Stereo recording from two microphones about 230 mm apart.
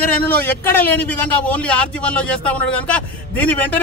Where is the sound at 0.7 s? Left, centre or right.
Centre.